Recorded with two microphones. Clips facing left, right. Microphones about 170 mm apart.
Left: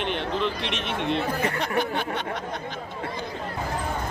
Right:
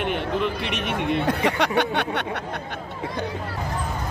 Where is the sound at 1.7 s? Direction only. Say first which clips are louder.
Right 3 dB; 70° right (ahead or behind).